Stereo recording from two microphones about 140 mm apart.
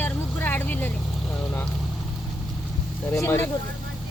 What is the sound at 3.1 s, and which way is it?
Speech, 15° left (ahead or behind).